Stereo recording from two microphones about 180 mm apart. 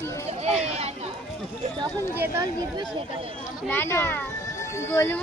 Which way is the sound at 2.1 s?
10° right (ahead or behind).